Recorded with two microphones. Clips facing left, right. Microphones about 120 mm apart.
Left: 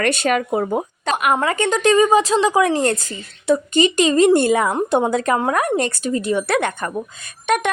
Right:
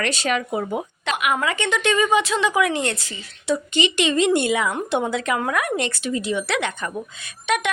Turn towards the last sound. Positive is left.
turn(degrees=45)  # may be behind; listen again after turning